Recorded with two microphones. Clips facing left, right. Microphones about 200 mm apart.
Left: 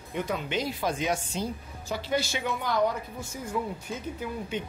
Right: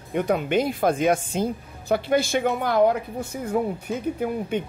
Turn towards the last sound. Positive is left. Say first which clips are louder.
# right 8 dB
turn(degrees=-55)  # may be behind; listen again after turning